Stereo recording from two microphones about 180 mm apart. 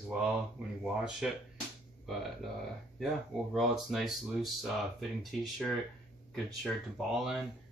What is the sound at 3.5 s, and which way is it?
Speech, centre (ahead or behind).